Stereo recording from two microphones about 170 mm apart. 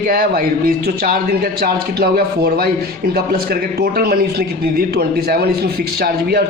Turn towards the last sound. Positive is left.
turn(degrees=-65)  # may be behind; listen again after turning